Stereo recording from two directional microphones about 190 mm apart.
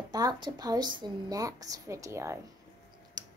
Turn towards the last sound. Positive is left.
turn(degrees=-20)  # may be behind; listen again after turning